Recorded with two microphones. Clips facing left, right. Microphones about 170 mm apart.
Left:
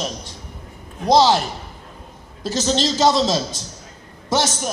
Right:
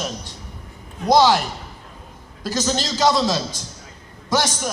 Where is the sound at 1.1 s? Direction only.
25° left (ahead or behind).